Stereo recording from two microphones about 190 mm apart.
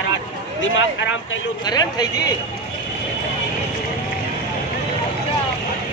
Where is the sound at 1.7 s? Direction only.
20° left (ahead or behind).